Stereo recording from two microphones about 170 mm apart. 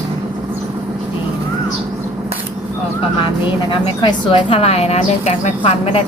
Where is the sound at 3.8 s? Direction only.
30° left (ahead or behind).